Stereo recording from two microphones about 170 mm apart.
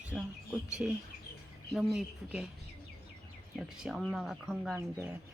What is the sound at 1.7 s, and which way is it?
Speech, centre (ahead or behind).